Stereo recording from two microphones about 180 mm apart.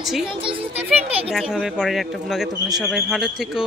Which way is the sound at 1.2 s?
5° right (ahead or behind).